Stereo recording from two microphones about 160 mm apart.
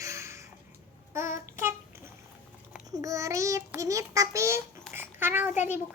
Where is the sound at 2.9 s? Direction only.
20° right (ahead or behind).